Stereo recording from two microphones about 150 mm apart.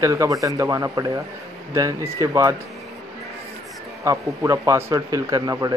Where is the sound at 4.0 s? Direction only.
20° right (ahead or behind).